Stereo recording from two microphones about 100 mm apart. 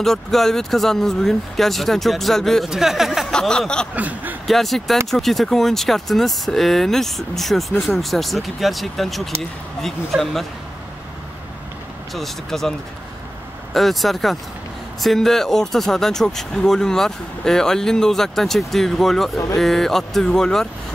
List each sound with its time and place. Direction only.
0.0 s speech: 5° left (ahead or behind)
3.3 s a sound: 5° left (ahead or behind)
3.9 s speech: 15° right (ahead or behind)
4.5 s speech: centre (ahead or behind)
12.1 s speech: 5° left (ahead or behind)
13.7 s speech: centre (ahead or behind)